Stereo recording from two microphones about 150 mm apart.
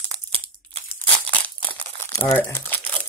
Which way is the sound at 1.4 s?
35° right (ahead or behind).